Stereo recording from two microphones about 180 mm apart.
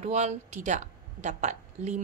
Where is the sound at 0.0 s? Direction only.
40° right (ahead or behind).